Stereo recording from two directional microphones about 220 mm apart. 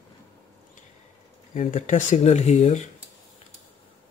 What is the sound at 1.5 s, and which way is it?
Speech, 35° left (ahead or behind).